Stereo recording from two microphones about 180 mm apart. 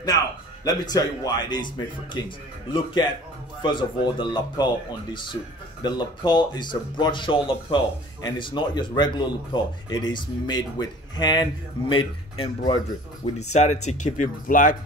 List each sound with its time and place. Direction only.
0.7 s speech: 20° left (ahead or behind)
13.2 s speech: 40° left (ahead or behind)